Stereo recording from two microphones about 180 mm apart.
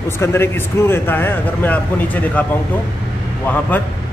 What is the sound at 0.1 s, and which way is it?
A man's voice, 15° left (ahead or behind).